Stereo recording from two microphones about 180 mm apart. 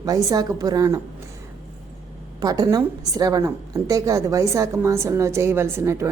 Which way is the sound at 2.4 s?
20° right (ahead or behind).